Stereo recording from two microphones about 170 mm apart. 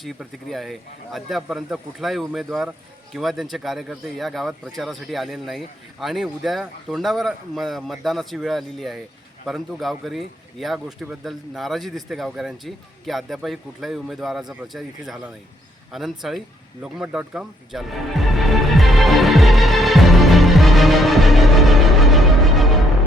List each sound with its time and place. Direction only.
0.0 s speech: centre (ahead or behind)
16.8 s music: 5° right (ahead or behind)